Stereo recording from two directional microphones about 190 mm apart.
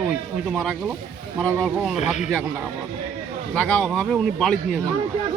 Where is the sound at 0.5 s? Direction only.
5° right (ahead or behind).